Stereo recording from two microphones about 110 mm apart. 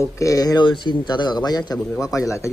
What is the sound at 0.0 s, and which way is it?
Speech, 30° left (ahead or behind).